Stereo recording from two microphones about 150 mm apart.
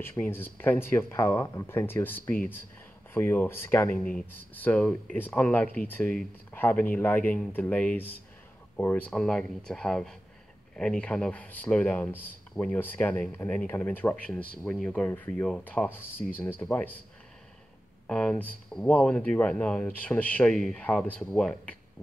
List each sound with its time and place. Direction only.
0.0 s speech: 15° left (ahead or behind)
3.9 s speech: 65° left (ahead or behind)
4.3 s speech: 10° left (ahead or behind)
18.0 s speech: 5° left (ahead or behind)